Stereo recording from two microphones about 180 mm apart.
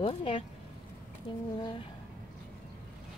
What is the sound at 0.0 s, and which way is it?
Speech, 30° left (ahead or behind).